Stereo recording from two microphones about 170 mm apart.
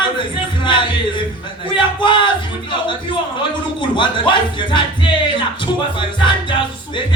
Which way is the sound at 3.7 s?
30° left (ahead or behind).